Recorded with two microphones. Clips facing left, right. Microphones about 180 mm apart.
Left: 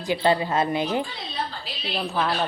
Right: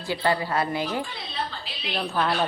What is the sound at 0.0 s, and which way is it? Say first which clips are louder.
A woman's voice: left 3 dB; 20° left (ahead or behind).